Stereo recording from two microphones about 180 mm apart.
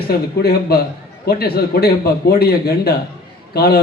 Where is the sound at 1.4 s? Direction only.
60° left (ahead or behind).